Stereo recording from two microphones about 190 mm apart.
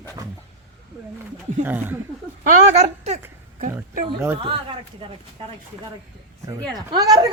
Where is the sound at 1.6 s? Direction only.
10° right (ahead or behind).